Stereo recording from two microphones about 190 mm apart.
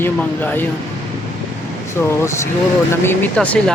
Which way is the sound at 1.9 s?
15° left (ahead or behind).